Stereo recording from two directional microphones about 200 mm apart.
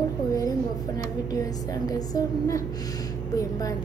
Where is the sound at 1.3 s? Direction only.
20° left (ahead or behind).